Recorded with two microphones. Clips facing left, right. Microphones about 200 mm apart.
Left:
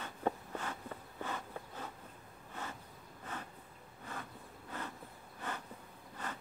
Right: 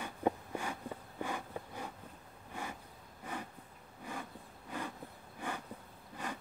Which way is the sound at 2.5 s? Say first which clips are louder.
Right 2 dB; 10° right (ahead or behind).